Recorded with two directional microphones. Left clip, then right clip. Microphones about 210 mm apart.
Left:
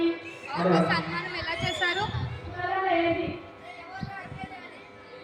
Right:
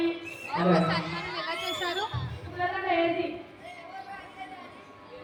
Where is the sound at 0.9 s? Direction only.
20° left (ahead or behind).